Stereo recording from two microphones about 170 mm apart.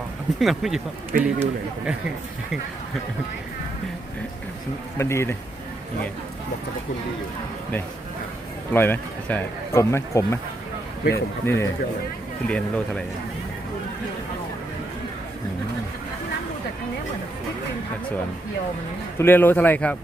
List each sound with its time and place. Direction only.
0.3 s a man's voice: centre (ahead or behind)
4.9 s speech: 15° left (ahead or behind)
8.7 s speech: 10° left (ahead or behind)
19.2 s speech: 10° left (ahead or behind)